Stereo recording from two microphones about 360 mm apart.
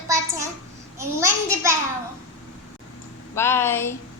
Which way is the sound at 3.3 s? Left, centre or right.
Centre.